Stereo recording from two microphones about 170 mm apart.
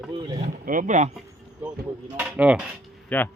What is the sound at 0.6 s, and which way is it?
Speech, 50° right (ahead or behind).